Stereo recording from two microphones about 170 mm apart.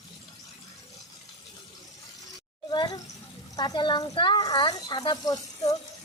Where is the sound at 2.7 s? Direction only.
25° left (ahead or behind).